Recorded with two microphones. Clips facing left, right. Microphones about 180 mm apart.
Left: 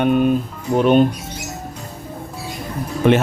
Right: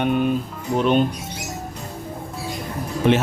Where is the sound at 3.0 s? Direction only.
55° left (ahead or behind).